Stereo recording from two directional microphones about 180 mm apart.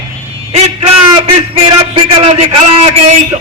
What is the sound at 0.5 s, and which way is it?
A man's voice, 30° right (ahead or behind).